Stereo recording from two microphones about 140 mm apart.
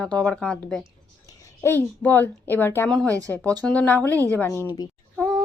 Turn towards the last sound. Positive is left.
turn(degrees=5)  # may be behind; listen again after turning